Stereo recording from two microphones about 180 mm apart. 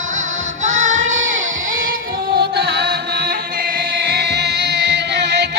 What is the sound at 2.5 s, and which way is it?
Music, 65° right (ahead or behind).